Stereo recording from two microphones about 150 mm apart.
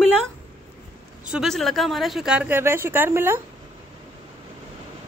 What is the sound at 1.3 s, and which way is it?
A woman's voice, centre (ahead or behind).